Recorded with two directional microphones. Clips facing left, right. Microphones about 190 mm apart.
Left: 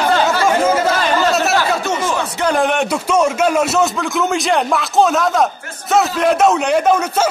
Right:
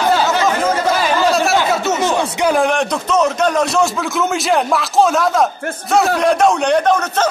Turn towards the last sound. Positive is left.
turn(degrees=5)  # may be behind; listen again after turning